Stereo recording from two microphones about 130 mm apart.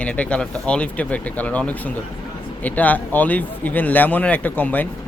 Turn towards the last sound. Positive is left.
turn(degrees=15)  # may be behind; listen again after turning